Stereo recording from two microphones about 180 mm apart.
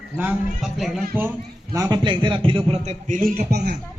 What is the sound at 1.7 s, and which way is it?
A man's voice, 20° right (ahead or behind).